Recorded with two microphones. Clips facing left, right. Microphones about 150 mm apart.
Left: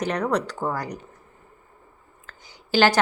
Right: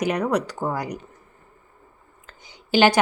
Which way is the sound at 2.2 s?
20° right (ahead or behind).